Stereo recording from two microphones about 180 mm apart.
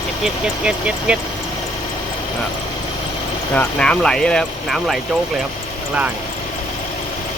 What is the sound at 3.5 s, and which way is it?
Speech, 5° left (ahead or behind).